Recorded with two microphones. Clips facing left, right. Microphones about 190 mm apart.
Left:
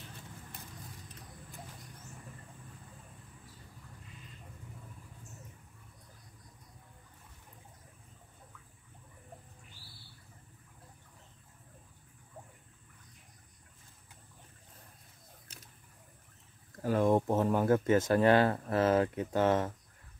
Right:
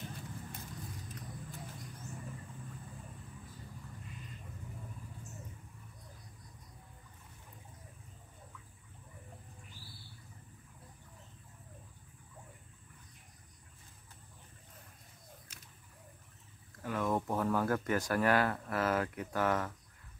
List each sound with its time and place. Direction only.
16.8 s speech: 35° left (ahead or behind)